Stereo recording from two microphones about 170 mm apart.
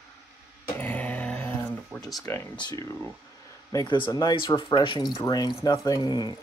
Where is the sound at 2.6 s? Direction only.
25° left (ahead or behind).